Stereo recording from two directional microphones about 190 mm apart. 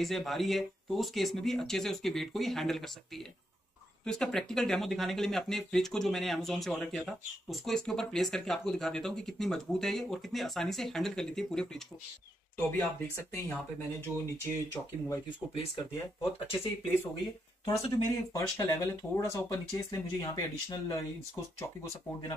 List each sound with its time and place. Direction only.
0.0 s speech: centre (ahead or behind)
4.0 s speech: 5° left (ahead or behind)
17.6 s speech: 20° left (ahead or behind)